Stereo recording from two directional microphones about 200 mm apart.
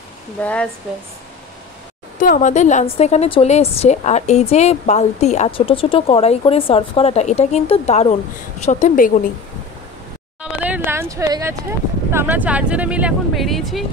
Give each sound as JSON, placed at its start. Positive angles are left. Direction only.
{"t": 0.4, "sound": "speech", "side_deg": 5}
{"t": 2.1, "sound": "a woman's voice", "side_deg": 40}
{"t": 10.4, "sound": "a sound", "side_deg": -5}
{"t": 12.1, "sound": "speech", "side_deg": -10}